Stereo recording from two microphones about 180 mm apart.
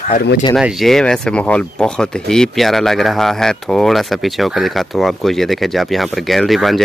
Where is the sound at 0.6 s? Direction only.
Centre (ahead or behind).